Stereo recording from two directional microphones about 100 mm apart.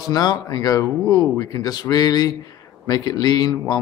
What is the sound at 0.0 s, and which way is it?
Speech, 40° left (ahead or behind).